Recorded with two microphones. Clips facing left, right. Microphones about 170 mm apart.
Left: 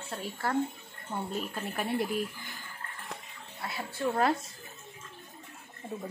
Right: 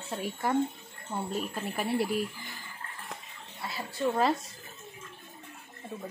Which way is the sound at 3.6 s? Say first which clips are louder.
Right 1 dB; centre (ahead or behind).